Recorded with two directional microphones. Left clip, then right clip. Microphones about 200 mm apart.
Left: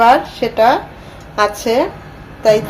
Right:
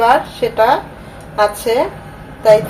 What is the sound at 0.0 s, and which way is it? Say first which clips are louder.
A woman's voice: left 2 dB; 20° left (ahead or behind).